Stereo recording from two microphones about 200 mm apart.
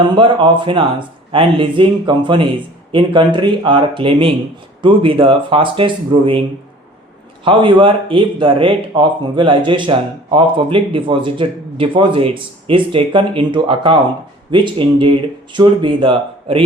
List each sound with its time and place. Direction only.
0.2 s speech: 25° right (ahead or behind)
7.4 s speech: 25° right (ahead or behind)